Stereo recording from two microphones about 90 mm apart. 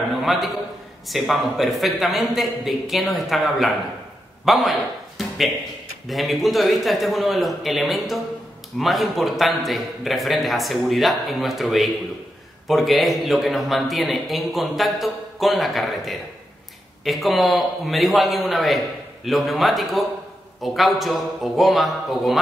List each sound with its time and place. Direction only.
0.2 s a man's voice: centre (ahead or behind)